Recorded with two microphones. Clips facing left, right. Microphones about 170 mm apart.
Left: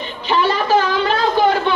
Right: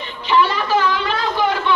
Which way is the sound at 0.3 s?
40° left (ahead or behind).